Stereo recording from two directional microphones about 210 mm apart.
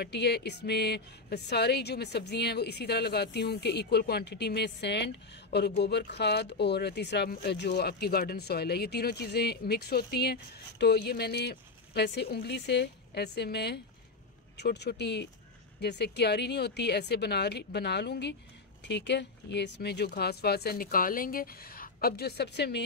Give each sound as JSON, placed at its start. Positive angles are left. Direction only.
{"t": 0.0, "sound": "a woman's voice", "side_deg": 50}